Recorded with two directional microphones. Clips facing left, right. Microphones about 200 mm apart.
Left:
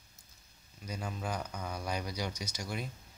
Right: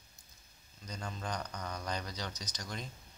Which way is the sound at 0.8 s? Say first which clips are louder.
Left 3 dB; 10° left (ahead or behind).